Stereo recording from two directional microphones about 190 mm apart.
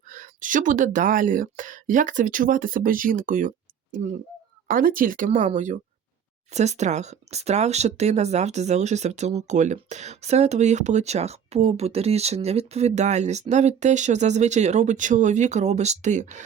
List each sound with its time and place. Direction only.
0.1 s speech: 40° right (ahead or behind)